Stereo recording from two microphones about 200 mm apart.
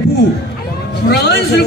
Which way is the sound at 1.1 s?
55° left (ahead or behind).